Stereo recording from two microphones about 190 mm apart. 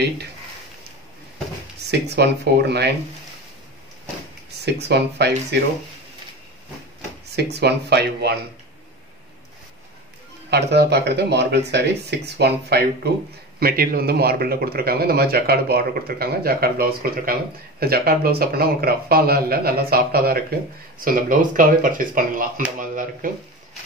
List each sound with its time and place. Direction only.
1.9 s speech: 60° right (ahead or behind)
4.6 s speech: 60° right (ahead or behind)
7.2 s speech: 60° right (ahead or behind)
10.5 s speech: 60° right (ahead or behind); by 23.3 s 45° right (ahead or behind)